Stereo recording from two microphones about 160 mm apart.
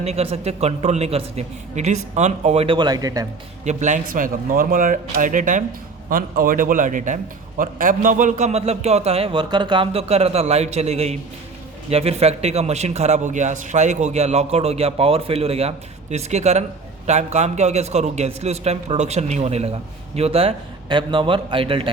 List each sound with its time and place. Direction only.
0.0 s a man's voice: 40° right (ahead or behind); by 3.2 s 25° right (ahead or behind)
3.6 s a man's voice: 50° right (ahead or behind)